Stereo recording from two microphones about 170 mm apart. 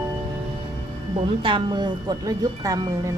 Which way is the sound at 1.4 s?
30° right (ahead or behind).